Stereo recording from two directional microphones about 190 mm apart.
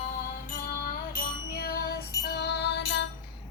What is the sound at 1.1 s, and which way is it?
Music, 50° left (ahead or behind).